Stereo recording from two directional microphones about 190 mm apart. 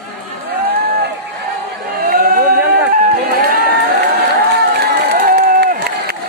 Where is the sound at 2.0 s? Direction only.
50° right (ahead or behind).